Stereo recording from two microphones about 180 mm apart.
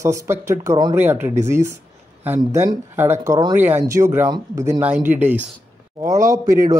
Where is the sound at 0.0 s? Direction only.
15° right (ahead or behind).